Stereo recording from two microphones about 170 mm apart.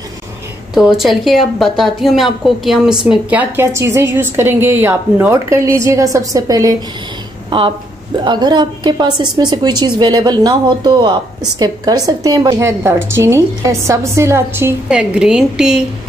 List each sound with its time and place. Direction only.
0.7 s speech: centre (ahead or behind)